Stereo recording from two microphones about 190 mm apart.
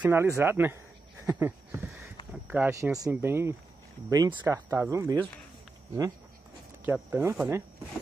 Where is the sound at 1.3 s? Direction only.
10° right (ahead or behind).